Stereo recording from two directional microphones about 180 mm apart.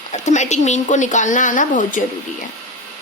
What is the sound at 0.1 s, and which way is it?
Speech, 40° left (ahead or behind).